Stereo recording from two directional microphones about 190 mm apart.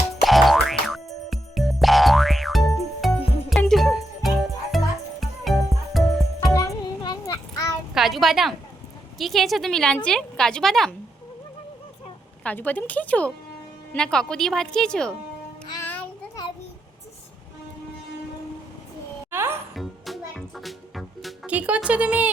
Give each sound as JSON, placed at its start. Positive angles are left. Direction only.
{"t": 0.2, "sound": "music", "side_deg": 0}
{"t": 6.4, "sound": "music", "side_deg": 20}
{"t": 7.9, "sound": "a sound", "side_deg": 0}
{"t": 9.1, "sound": "a woman's voice", "side_deg": 0}
{"t": 12.4, "sound": "a woman's voice", "side_deg": 10}
{"t": 15.7, "sound": "music", "side_deg": 10}
{"t": 19.3, "sound": "music", "side_deg": -10}
{"t": 19.7, "sound": "music", "side_deg": 0}